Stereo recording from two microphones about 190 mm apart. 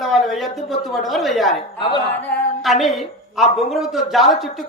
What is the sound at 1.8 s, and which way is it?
Speech, 25° left (ahead or behind).